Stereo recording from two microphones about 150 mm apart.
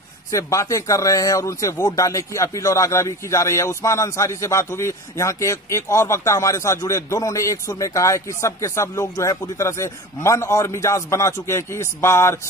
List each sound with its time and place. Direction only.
0.3 s speech: 20° left (ahead or behind)